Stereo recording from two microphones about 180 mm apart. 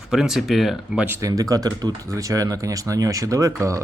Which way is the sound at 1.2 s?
20° right (ahead or behind).